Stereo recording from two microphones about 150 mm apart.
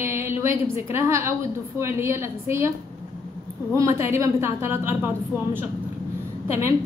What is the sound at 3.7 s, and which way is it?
A woman's voice, 20° right (ahead or behind).